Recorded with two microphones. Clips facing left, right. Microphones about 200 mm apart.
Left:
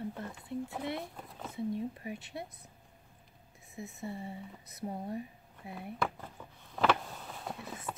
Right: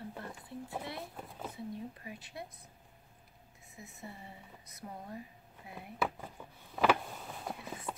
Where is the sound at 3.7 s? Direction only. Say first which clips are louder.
Left 8 dB; 25° left (ahead or behind).